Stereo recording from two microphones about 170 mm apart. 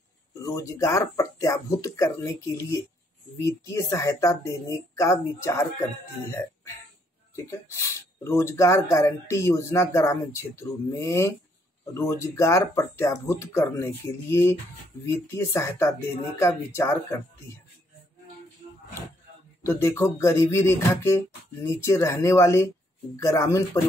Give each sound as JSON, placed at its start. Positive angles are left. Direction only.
{"t": 0.3, "sound": "speech", "side_deg": 20}
{"t": 7.8, "sound": "speech", "side_deg": 15}
{"t": 19.6, "sound": "speech", "side_deg": 15}